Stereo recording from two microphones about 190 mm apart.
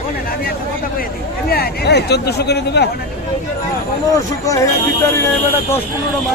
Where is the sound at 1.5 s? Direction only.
60° left (ahead or behind).